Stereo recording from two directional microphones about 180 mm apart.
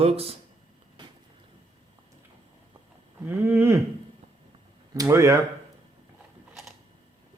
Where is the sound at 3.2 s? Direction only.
10° right (ahead or behind).